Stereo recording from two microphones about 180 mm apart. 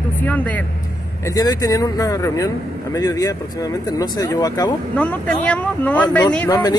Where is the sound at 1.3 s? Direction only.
20° left (ahead or behind).